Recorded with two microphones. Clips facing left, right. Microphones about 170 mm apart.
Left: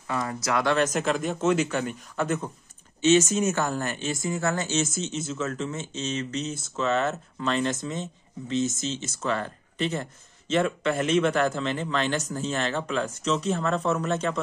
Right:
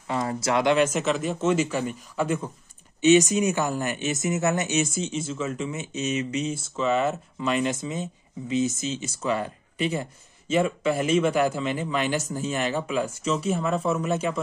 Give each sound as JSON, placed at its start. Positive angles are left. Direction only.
{"t": 0.1, "sound": "speech", "side_deg": -25}
{"t": 0.8, "sound": "a man's voice", "side_deg": -5}
{"t": 3.0, "sound": "a man's voice", "side_deg": -15}
{"t": 5.0, "sound": "a man's voice", "side_deg": -5}